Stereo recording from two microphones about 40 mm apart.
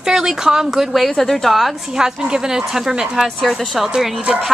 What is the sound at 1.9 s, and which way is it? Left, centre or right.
A woman's voice, centre.